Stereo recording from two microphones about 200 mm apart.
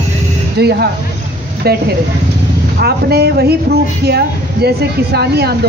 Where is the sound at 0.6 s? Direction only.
55° right (ahead or behind).